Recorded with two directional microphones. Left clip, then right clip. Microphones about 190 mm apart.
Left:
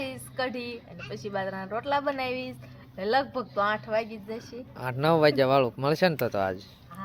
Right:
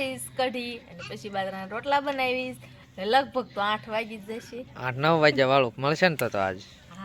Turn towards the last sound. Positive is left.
turn(degrees=-5)  # may be behind; listen again after turning